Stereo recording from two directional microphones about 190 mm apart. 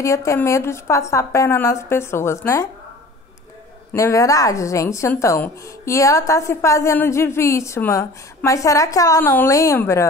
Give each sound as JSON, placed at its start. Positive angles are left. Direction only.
{"t": 0.0, "sound": "speech", "side_deg": 15}
{"t": 3.9, "sound": "speech", "side_deg": 15}